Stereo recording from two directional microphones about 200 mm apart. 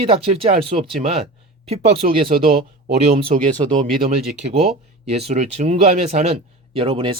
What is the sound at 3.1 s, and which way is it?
Speech, 25° right (ahead or behind).